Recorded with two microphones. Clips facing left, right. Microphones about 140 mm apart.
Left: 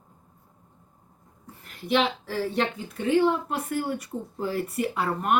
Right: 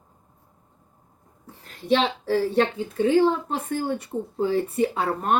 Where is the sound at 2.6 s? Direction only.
25° right (ahead or behind).